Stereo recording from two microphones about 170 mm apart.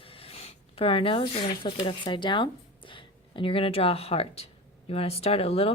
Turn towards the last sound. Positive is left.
turn(degrees=35)  # may be behind; listen again after turning